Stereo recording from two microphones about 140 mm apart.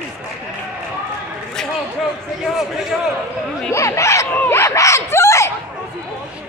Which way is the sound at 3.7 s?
20° left (ahead or behind).